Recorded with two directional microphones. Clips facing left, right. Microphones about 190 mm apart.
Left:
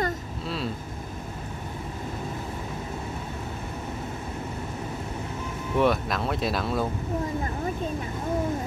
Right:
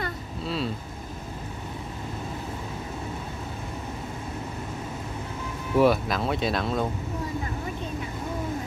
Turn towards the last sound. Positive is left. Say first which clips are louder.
# even
turn(degrees=0)  # may be behind; listen again after turning